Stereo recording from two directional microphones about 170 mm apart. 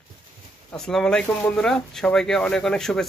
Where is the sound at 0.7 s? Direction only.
5° left (ahead or behind).